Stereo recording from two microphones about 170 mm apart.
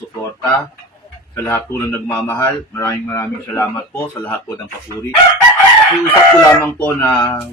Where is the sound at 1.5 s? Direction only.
15° left (ahead or behind).